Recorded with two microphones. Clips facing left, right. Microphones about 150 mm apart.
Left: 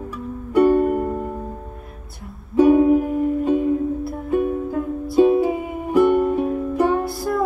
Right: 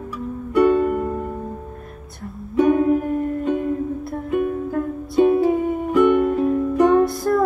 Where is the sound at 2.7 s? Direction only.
10° left (ahead or behind).